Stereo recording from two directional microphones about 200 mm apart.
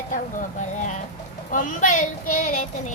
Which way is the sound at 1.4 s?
40° left (ahead or behind).